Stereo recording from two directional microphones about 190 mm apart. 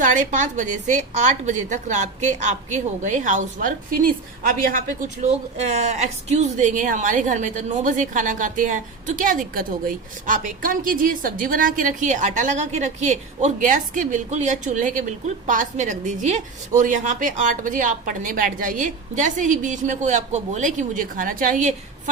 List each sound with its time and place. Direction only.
0.0 s a woman's voice: 40° right (ahead or behind)